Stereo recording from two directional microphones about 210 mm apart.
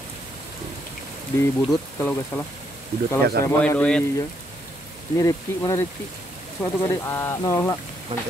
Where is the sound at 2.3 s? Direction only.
10° left (ahead or behind).